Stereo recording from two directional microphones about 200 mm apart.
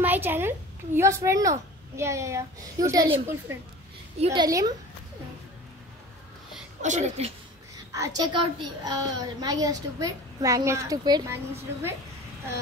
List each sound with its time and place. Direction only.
0.0 s a woman's voice: 10° right (ahead or behind)
4.2 s a woman's voice: 30° right (ahead or behind)
4.5 s a woman's voice: 15° right (ahead or behind)
6.8 s a woman's voice: 35° right (ahead or behind)
7.9 s a woman's voice: 15° right (ahead or behind)